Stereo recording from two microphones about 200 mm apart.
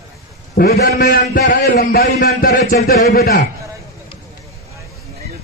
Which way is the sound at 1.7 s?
40° left (ahead or behind).